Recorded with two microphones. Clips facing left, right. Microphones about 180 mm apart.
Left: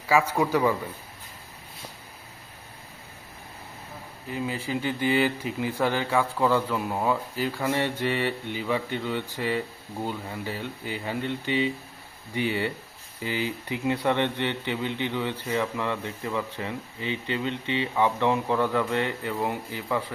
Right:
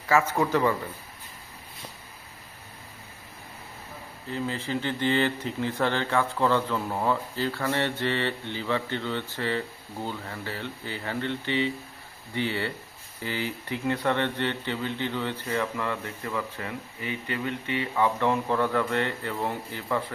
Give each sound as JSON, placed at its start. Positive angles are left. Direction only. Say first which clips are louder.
{"t": 0.1, "sound": "speech", "louder": "left 1 dB", "side_deg": 15}
{"t": 4.3, "sound": "speech", "louder": "even", "side_deg": 10}